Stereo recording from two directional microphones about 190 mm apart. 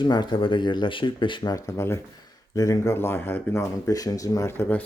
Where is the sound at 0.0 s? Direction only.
25° left (ahead or behind).